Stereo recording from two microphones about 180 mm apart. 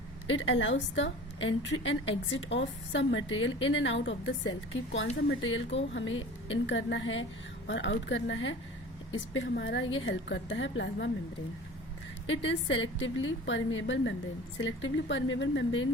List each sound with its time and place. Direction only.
0.3 s a woman's voice: 90° left
7.7 s a woman's voice: 80° left
12.3 s a woman's voice: 90° left